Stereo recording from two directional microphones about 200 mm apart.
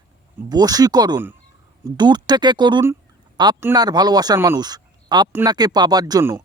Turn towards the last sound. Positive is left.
turn(degrees=-15)  # may be behind; listen again after turning